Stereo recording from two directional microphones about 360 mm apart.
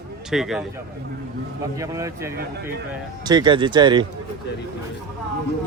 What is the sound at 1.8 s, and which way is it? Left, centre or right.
Speech, centre.